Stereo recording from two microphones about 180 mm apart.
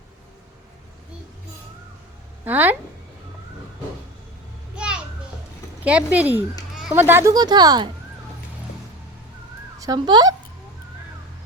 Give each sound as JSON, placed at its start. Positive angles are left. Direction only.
{"t": 2.4, "sound": "a woman's voice", "side_deg": -10}
{"t": 4.7, "sound": "children playing", "side_deg": -5}
{"t": 5.8, "sound": "speech", "side_deg": -5}
{"t": 9.7, "sound": "speech", "side_deg": -20}